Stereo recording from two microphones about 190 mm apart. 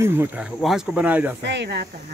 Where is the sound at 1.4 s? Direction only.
65° right (ahead or behind).